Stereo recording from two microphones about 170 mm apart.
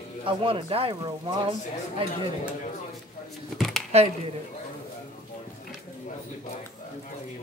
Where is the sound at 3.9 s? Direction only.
40° right (ahead or behind).